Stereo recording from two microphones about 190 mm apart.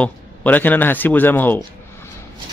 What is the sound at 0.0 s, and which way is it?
Speech, 10° left (ahead or behind).